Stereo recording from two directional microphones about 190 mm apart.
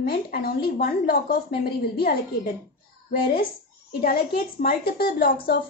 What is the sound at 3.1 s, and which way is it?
A woman's voice, 55° left (ahead or behind).